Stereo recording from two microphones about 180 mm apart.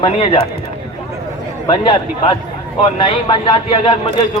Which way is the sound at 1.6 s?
25° left (ahead or behind).